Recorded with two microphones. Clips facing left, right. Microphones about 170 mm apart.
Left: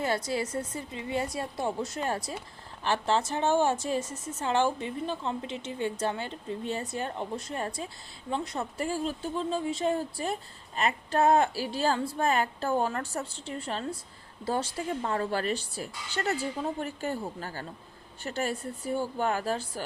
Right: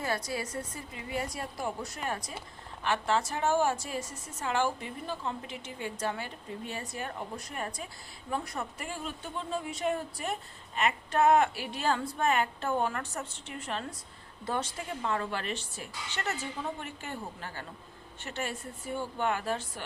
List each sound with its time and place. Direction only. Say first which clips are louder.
0.3 s a woman's voice: left 5 dB; 25° left (ahead or behind)